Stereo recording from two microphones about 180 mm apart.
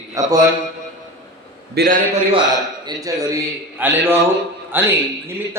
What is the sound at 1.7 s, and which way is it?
Speech, 55° right (ahead or behind).